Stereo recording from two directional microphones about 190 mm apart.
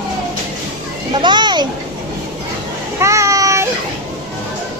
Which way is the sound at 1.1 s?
25° right (ahead or behind).